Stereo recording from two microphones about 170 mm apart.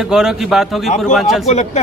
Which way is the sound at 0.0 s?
5° right (ahead or behind).